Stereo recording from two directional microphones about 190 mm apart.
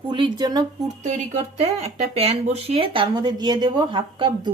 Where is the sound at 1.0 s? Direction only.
40° right (ahead or behind).